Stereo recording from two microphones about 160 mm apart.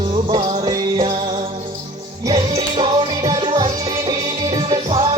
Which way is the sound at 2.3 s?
30° right (ahead or behind).